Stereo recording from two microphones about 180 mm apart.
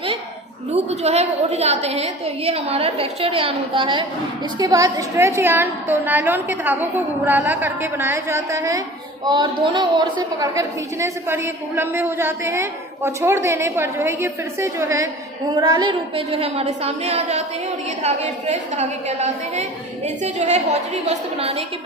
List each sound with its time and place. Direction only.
0.7 s a woman's voice: 35° right (ahead or behind)